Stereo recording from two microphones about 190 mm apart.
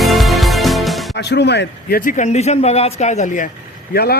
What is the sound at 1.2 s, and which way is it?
Speech, 65° left (ahead or behind).